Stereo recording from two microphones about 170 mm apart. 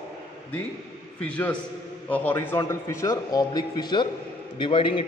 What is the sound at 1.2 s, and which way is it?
A man's voice, 10° left (ahead or behind).